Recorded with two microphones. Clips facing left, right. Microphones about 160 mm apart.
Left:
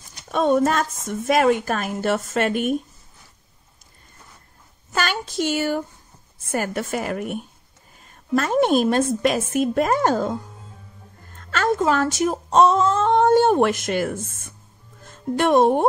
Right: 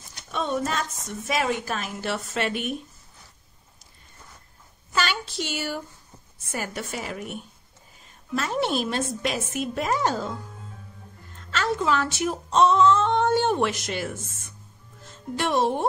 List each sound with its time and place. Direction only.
0.3 s a woman's voice: 50° left (ahead or behind)
4.9 s a sound: 45° left (ahead or behind)
6.5 s a woman's voice: 50° left (ahead or behind)
8.4 s a woman's voice: 50° left (ahead or behind)
11.3 s speech: 50° left (ahead or behind)